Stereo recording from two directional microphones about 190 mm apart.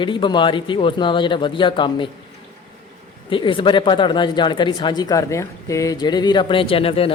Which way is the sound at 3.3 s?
25° left (ahead or behind).